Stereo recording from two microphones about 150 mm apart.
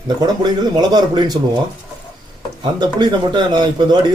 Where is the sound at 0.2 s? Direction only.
25° right (ahead or behind).